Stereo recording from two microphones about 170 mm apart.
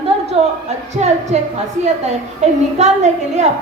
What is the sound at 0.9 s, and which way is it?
A woman's voice, 40° right (ahead or behind).